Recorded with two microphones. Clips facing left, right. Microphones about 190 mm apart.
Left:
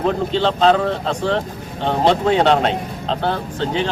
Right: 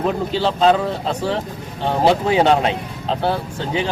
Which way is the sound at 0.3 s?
5° right (ahead or behind).